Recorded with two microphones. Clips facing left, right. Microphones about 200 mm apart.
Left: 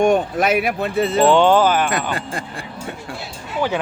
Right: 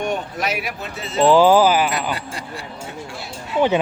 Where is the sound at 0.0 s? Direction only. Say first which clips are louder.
Left 8 dB; 50° left (ahead or behind).